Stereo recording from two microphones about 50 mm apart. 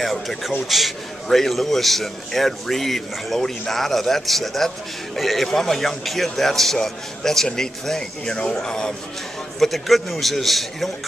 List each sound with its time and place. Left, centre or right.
0.0 s a man's voice: centre
9.6 s a man's voice: centre